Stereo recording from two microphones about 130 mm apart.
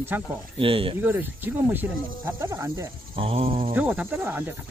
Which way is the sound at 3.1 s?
45° right (ahead or behind).